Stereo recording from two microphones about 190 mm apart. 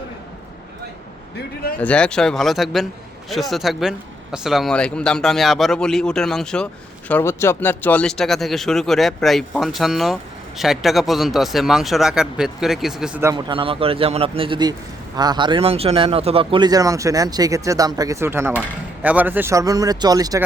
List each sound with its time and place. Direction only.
1.8 s speech: 5° left (ahead or behind)
13.2 s a man's voice: 25° right (ahead or behind)